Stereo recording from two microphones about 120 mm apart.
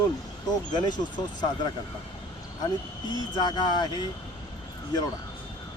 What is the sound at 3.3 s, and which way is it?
Speech, 35° left (ahead or behind).